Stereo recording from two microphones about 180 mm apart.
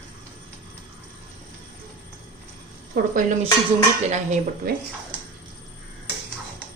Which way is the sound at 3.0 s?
55° right (ahead or behind).